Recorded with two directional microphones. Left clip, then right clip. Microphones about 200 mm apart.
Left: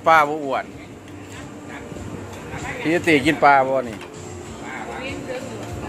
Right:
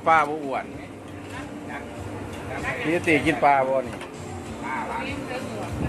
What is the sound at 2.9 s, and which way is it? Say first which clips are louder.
Speech: left 4 dB; 45° left (ahead or behind).